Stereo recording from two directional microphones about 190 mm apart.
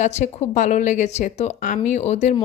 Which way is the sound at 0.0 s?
35° left (ahead or behind).